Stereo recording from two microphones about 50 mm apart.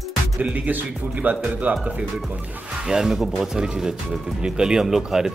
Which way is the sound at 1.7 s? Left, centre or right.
Right.